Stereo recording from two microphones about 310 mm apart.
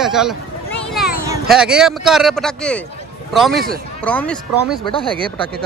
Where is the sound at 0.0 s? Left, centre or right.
Centre.